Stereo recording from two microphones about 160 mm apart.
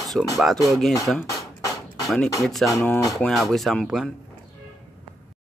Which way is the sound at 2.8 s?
20° left (ahead or behind).